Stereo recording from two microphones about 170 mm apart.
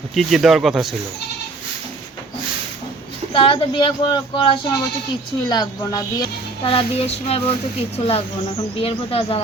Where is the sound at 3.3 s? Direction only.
30° left (ahead or behind).